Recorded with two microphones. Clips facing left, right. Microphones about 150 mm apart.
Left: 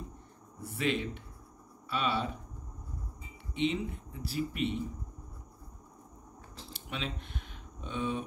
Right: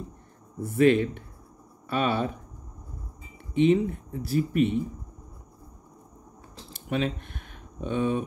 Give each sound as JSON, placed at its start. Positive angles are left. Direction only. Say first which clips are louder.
{"t": 0.6, "sound": "speech", "louder": "right 12 dB", "side_deg": -50}
{"t": 3.5, "sound": "speech", "louder": "right 11 dB", "side_deg": -50}
{"t": 6.7, "sound": "typing", "louder": "right 11 dB", "side_deg": -50}